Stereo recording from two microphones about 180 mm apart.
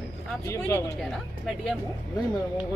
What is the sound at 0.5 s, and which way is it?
Speech, 15° left (ahead or behind).